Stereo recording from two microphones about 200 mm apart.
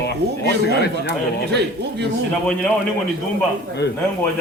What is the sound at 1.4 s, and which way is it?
Speech, 55° right (ahead or behind).